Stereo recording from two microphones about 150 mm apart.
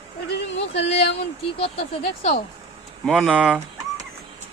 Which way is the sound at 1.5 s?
40° left (ahead or behind).